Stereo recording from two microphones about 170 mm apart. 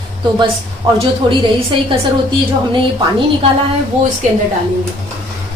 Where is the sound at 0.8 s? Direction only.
30° right (ahead or behind).